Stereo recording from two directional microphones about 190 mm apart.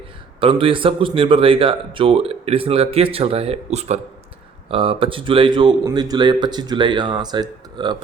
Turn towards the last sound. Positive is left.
turn(degrees=-25)  # may be behind; listen again after turning